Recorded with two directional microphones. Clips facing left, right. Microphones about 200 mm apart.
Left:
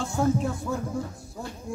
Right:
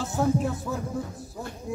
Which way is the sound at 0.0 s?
5° right (ahead or behind).